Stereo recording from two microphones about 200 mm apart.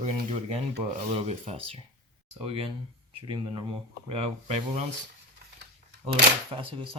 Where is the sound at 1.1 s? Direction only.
30° right (ahead or behind).